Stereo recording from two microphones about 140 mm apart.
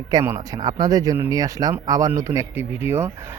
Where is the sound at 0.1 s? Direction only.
30° right (ahead or behind).